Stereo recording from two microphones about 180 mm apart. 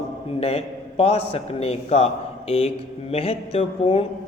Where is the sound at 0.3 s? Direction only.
35° left (ahead or behind).